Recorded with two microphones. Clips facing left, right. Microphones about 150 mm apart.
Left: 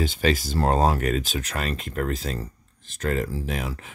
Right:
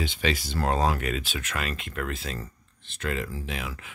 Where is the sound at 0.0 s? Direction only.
45° left (ahead or behind).